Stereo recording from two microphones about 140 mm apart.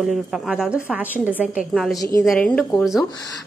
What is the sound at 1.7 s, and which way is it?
Speech, centre (ahead or behind).